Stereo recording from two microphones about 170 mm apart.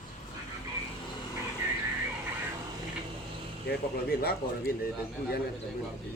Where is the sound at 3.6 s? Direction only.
65° left (ahead or behind).